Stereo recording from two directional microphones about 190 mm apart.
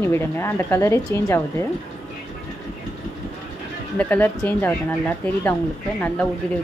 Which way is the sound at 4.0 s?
10° left (ahead or behind).